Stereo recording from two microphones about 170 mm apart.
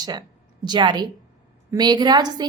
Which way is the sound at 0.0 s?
25° right (ahead or behind).